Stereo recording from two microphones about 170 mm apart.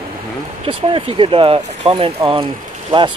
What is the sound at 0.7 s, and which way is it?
Speech, 30° right (ahead or behind).